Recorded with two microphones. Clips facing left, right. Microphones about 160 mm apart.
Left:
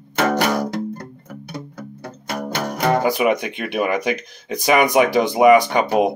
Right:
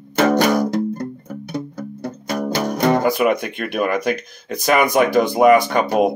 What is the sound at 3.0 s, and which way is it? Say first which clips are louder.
Speech: right 1 dB; 15° left (ahead or behind).